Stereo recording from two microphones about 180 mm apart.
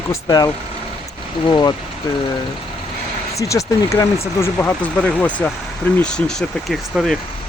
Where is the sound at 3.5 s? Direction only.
15° left (ahead or behind).